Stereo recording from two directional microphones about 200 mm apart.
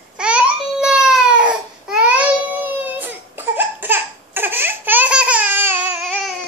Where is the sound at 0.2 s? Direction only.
5° right (ahead or behind).